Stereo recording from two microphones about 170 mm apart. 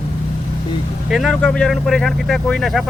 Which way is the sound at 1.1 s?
Centre (ahead or behind).